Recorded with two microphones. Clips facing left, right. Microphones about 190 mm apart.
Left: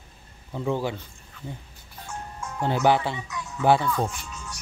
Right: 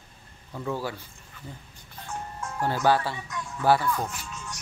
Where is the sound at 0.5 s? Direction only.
20° left (ahead or behind).